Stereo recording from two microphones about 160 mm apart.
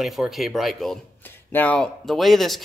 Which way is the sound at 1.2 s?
10° left (ahead or behind).